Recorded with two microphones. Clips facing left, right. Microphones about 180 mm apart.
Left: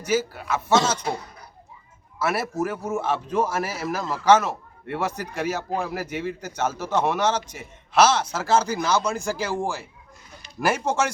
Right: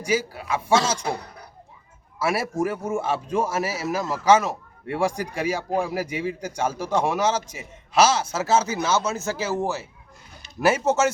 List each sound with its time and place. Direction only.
0.0 s a man's voice: 10° right (ahead or behind)
2.1 s a man's voice: 10° right (ahead or behind)